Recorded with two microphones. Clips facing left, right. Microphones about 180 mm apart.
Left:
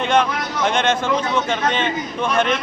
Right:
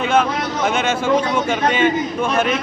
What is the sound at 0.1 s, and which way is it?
A man's voice, 5° right (ahead or behind).